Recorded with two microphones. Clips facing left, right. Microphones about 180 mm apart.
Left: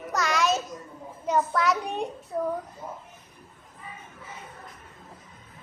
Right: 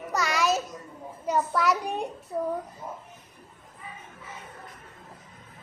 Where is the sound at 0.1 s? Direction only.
5° right (ahead or behind).